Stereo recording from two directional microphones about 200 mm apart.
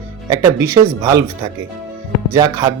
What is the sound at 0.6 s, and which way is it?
Speech, 20° right (ahead or behind).